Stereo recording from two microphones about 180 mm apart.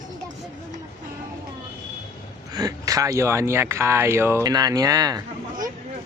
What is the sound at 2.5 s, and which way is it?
Speech, 20° right (ahead or behind).